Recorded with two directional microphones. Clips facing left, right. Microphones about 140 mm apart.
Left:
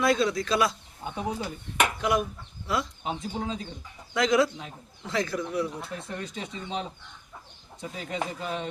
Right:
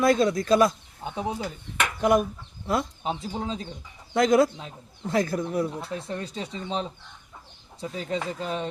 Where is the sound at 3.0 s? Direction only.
30° right (ahead or behind).